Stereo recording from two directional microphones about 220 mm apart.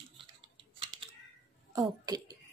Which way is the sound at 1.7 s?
15° right (ahead or behind).